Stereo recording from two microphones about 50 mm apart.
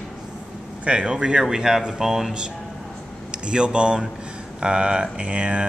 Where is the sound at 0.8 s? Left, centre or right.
Centre.